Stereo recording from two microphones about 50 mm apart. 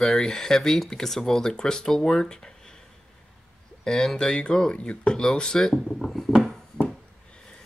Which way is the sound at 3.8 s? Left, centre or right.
Centre.